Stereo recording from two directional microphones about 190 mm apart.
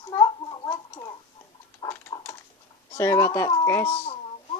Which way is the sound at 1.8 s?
15° left (ahead or behind).